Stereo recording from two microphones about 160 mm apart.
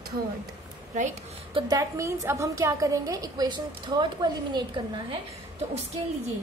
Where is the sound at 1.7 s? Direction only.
20° right (ahead or behind).